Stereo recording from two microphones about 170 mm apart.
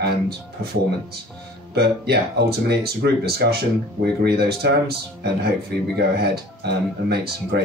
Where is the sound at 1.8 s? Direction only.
70° right (ahead or behind).